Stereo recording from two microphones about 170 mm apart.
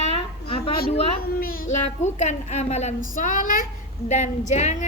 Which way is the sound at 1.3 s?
60° left (ahead or behind).